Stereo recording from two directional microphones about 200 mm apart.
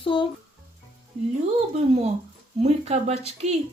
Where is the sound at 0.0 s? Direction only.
25° left (ahead or behind).